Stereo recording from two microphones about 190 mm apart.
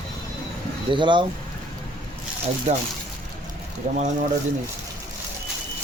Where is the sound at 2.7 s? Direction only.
35° right (ahead or behind).